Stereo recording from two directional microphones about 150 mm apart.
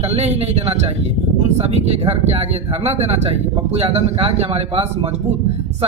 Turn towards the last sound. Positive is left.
turn(degrees=-40)  # may be behind; listen again after turning